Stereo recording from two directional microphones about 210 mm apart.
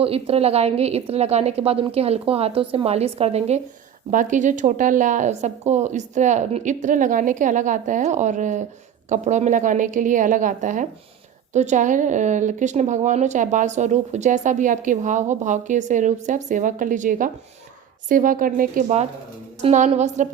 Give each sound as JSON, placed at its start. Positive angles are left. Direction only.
{"t": 0.0, "sound": "a woman's voice", "side_deg": -30}